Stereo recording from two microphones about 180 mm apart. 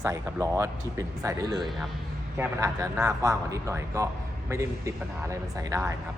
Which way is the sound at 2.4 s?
15° right (ahead or behind).